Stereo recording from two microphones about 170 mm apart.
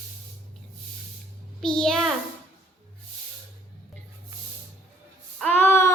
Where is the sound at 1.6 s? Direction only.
5° left (ahead or behind).